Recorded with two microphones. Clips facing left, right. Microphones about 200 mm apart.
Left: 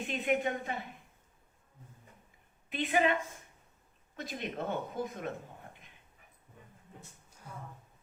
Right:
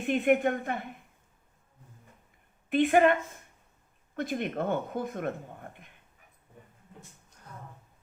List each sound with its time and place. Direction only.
0.0 s a woman's voice: 55° right (ahead or behind)
2.6 s a woman's voice: 55° right (ahead or behind)
7.3 s a sound: 10° left (ahead or behind)